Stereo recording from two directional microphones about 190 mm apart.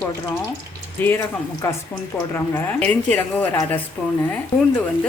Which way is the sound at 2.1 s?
10° left (ahead or behind).